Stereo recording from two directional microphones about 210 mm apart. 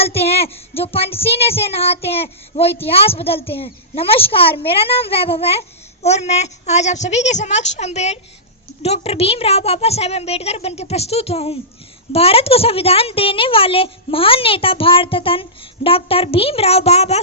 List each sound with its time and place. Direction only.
0.0 s a woman's voice: 30° left (ahead or behind)